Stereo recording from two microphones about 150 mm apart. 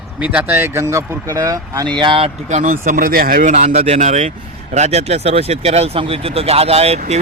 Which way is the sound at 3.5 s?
50° right (ahead or behind).